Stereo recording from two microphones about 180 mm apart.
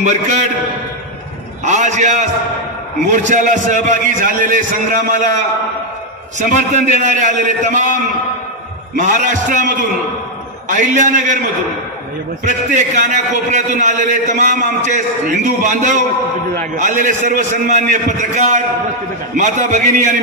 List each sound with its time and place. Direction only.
0.0 s a man's voice: 40° right (ahead or behind)
1.6 s a man's voice: 40° right (ahead or behind)
6.4 s a man's voice: 45° right (ahead or behind)
9.0 s a man's voice: 45° right (ahead or behind)
12.4 s a man's voice: 45° right (ahead or behind)